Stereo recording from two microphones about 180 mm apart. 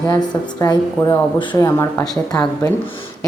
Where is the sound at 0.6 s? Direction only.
20° left (ahead or behind).